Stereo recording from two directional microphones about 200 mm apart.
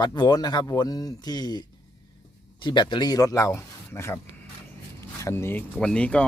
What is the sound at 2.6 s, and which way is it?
Speech, 25° left (ahead or behind).